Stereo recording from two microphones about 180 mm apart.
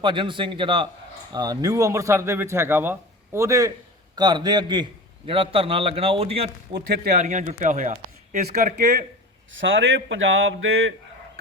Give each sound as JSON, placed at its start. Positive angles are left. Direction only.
{"t": 0.0, "sound": "a man's voice", "side_deg": -25}
{"t": 6.7, "sound": "speech", "side_deg": -60}
{"t": 7.1, "sound": "speech", "side_deg": -40}
{"t": 9.5, "sound": "speech", "side_deg": -90}